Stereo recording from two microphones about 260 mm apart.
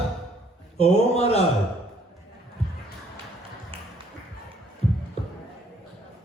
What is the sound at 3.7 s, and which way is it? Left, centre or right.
Music, right.